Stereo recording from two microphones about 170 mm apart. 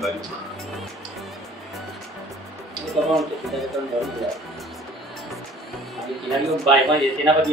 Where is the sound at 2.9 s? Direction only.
Centre (ahead or behind).